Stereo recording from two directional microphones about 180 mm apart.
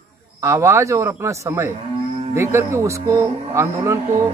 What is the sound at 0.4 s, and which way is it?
Speech, 15° right (ahead or behind).